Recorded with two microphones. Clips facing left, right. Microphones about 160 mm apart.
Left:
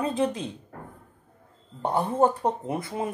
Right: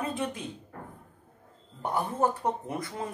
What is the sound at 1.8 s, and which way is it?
Speech, 30° left (ahead or behind).